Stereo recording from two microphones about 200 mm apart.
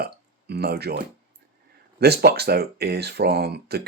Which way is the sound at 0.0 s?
50° right (ahead or behind).